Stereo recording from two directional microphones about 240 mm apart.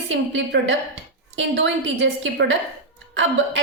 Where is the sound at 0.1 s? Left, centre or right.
Right.